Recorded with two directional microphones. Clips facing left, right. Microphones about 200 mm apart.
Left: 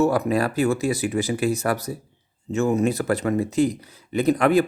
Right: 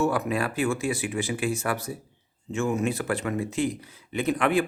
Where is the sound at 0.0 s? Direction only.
40° left (ahead or behind).